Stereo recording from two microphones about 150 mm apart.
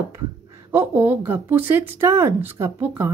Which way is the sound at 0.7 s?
15° right (ahead or behind).